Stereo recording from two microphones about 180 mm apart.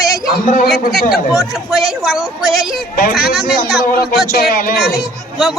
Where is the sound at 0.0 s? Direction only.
Centre (ahead or behind).